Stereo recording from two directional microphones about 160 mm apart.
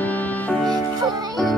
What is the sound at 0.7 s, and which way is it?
Music, 25° right (ahead or behind).